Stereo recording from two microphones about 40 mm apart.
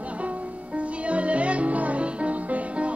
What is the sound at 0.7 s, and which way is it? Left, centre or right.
Music, right.